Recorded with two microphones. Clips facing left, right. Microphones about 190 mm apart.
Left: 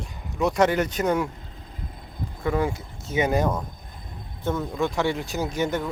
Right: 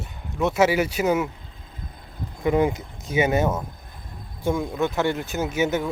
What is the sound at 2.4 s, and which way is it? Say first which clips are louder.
Speech: right 4 dB; 20° right (ahead or behind).